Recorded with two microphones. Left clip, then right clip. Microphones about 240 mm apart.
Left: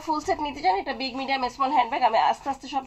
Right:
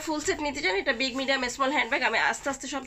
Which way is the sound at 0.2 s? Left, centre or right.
Centre.